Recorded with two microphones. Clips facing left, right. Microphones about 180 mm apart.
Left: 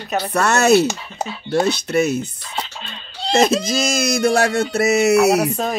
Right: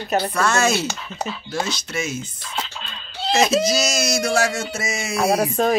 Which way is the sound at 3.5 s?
50° left (ahead or behind).